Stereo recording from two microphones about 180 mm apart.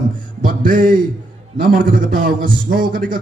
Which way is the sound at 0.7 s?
50° right (ahead or behind).